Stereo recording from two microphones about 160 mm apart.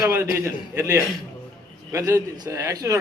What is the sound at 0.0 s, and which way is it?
A man's voice, 15° right (ahead or behind).